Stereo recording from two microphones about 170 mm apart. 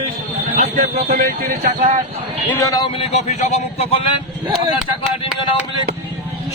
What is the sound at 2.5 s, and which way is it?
Speech, 20° left (ahead or behind).